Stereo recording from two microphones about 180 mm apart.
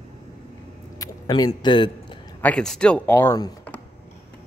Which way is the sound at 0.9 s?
20° left (ahead or behind).